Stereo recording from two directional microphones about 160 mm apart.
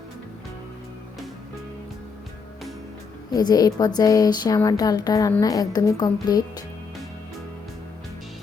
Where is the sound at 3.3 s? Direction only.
25° left (ahead or behind).